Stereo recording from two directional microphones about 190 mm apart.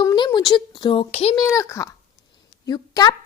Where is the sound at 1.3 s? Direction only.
15° left (ahead or behind).